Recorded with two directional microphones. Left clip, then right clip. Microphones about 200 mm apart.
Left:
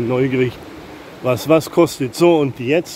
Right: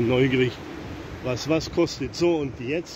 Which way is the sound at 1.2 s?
25° left (ahead or behind).